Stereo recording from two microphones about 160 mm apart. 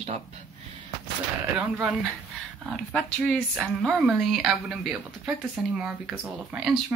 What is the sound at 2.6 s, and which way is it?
Speech, centre (ahead or behind).